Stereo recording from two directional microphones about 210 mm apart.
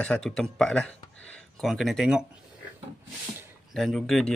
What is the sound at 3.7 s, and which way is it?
Speech, centre (ahead or behind).